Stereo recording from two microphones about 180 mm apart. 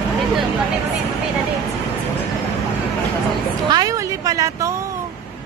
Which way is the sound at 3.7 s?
20° right (ahead or behind).